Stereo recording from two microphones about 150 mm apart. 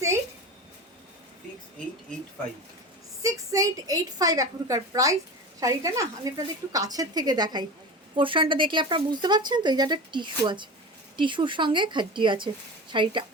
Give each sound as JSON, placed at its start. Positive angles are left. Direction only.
{"t": 3.2, "sound": "speech", "side_deg": -20}